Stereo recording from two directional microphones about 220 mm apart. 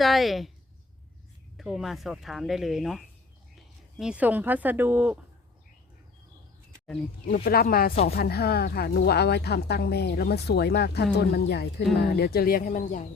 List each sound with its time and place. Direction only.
0.0 s speech: centre (ahead or behind)
1.5 s speech: centre (ahead or behind)
7.4 s speech: 40° left (ahead or behind)